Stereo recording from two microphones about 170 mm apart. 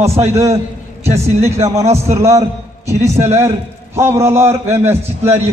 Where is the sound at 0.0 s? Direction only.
40° right (ahead or behind).